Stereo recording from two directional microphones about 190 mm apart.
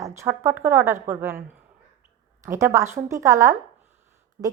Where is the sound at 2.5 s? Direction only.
15° right (ahead or behind).